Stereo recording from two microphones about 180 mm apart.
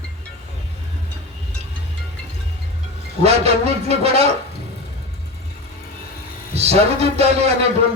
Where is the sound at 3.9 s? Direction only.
35° right (ahead or behind).